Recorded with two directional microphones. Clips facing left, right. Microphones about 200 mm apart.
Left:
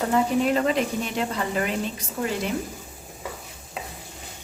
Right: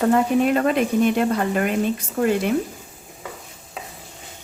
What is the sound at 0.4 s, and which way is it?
Speech, 55° right (ahead or behind).